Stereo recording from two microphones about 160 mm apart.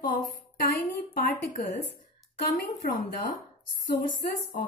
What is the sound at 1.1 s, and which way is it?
Speech, 60° left (ahead or behind).